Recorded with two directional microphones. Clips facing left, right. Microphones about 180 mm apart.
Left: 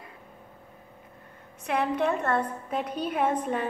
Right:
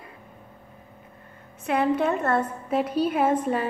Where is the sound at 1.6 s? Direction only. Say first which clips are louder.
Right 3 dB; centre (ahead or behind).